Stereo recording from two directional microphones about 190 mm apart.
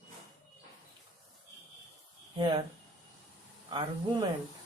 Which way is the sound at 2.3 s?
25° right (ahead or behind).